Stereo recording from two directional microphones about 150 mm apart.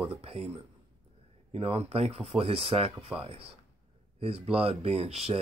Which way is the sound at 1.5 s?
40° right (ahead or behind).